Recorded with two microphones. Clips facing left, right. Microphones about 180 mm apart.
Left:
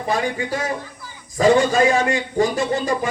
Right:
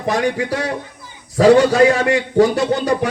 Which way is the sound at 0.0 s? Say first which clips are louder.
Right 4 dB; 75° right (ahead or behind).